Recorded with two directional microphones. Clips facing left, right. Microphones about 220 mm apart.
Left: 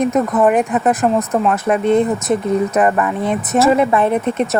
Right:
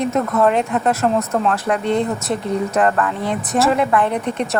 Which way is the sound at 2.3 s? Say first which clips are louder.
Left 4 dB; 20° left (ahead or behind).